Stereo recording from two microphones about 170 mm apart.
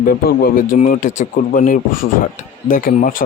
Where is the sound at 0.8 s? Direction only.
45° left (ahead or behind).